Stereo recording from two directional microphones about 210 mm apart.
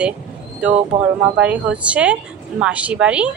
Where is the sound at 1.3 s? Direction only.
5° right (ahead or behind).